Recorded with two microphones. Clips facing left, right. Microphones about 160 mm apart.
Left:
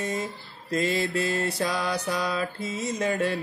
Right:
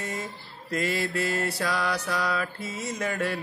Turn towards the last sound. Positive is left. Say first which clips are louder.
# left 3 dB
turn(degrees=20)  # may be behind; listen again after turning